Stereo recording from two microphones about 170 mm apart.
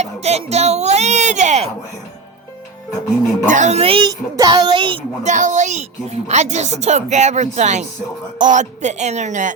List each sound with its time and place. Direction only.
0.0 s a child's voice: 40° right (ahead or behind)
3.4 s speech: 45° right (ahead or behind); by 4.9 s 30° right (ahead or behind)
5.2 s a woman's voice: 45° right (ahead or behind)